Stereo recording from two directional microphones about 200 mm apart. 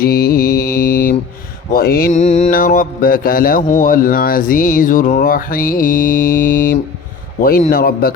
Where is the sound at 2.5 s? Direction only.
45° left (ahead or behind).